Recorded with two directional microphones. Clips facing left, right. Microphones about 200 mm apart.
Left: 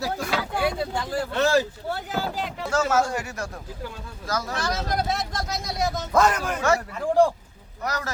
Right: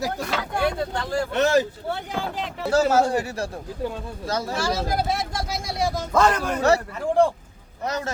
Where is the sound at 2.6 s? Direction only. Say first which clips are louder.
Right 4 dB; 30° right (ahead or behind).